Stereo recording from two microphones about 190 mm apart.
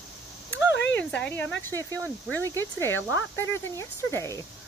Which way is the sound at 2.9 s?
90° left.